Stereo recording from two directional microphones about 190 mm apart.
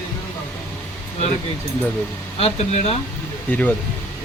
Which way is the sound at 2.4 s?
35° left (ahead or behind).